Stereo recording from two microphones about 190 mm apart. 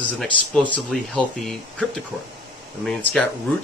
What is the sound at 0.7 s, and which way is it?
Speech, 5° left (ahead or behind).